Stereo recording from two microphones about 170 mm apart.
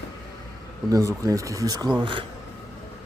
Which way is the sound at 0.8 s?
20° right (ahead or behind).